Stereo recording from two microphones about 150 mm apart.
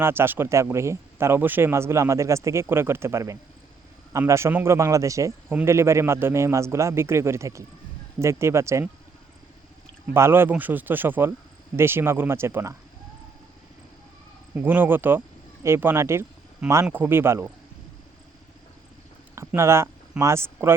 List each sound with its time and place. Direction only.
0.0 s speech: 15° right (ahead or behind)
10.2 s speech: 15° right (ahead or behind)
14.5 s speech: 15° right (ahead or behind)
19.4 s speech: 15° right (ahead or behind)